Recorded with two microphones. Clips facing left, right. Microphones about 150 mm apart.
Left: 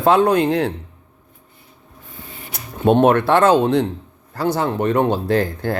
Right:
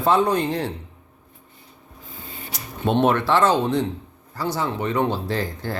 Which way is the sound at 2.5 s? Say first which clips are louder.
Left 6 dB; 50° left (ahead or behind).